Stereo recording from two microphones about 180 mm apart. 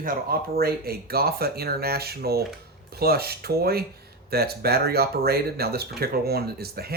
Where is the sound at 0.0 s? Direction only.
55° right (ahead or behind).